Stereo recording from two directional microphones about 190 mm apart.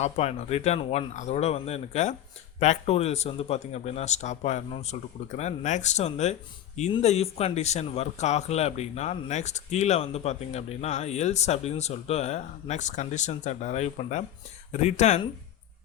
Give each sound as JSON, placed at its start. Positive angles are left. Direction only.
{"t": 0.0, "sound": "speech", "side_deg": 35}